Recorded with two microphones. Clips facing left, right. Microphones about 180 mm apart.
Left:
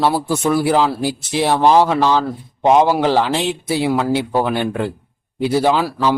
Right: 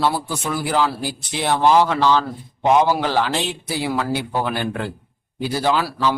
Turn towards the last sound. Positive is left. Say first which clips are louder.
# left 3 dB
turn(degrees=15)  # may be behind; listen again after turning